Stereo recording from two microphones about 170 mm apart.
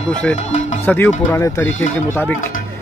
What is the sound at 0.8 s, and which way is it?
Speech, 15° left (ahead or behind).